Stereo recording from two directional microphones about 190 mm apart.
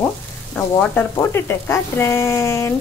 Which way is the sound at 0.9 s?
10° left (ahead or behind).